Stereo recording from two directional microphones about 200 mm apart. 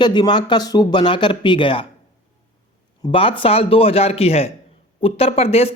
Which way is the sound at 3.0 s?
25° left (ahead or behind).